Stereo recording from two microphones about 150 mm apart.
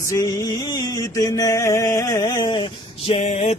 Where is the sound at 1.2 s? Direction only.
25° left (ahead or behind).